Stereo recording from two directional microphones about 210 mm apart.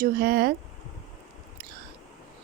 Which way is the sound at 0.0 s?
45° right (ahead or behind).